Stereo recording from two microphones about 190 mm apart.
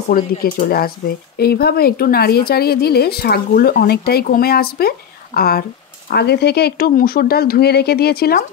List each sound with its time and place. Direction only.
0.1 s speech: 50° left (ahead or behind)